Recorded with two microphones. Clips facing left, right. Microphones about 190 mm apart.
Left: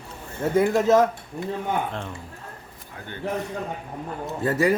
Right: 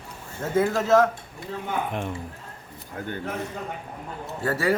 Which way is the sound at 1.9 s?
15° right (ahead or behind).